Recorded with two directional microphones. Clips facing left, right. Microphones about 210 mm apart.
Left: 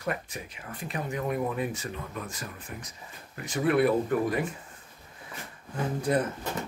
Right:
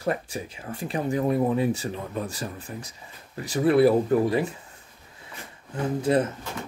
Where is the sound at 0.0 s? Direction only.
30° right (ahead or behind).